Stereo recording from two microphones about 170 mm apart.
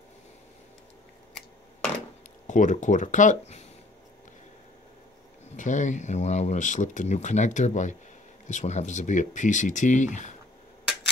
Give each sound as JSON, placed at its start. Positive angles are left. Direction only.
{"t": 2.4, "sound": "speech", "side_deg": 45}
{"t": 5.6, "sound": "speech", "side_deg": 45}